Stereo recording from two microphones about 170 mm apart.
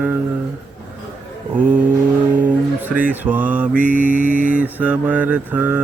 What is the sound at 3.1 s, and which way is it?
Mantra, 10° right (ahead or behind).